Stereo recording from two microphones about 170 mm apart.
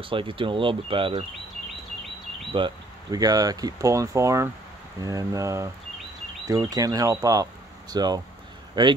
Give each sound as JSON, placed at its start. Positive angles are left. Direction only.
{"t": 0.0, "sound": "speech", "side_deg": -30}
{"t": 2.5, "sound": "speech", "side_deg": -25}